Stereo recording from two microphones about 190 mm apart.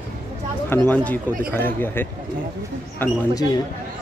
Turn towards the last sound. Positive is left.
turn(degrees=20)  # may be behind; listen again after turning